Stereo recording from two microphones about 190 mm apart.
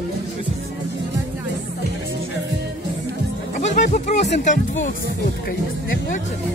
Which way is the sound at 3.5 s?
40° left (ahead or behind).